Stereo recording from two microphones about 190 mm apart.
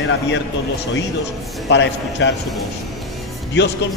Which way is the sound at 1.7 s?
70° left (ahead or behind).